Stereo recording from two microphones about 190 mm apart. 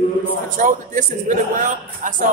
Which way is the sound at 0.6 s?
45° right (ahead or behind).